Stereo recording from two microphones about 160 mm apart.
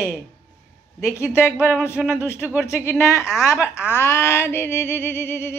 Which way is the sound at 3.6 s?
10° right (ahead or behind).